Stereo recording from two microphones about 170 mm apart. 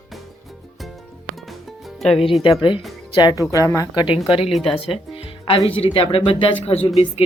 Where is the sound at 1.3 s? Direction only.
Centre (ahead or behind).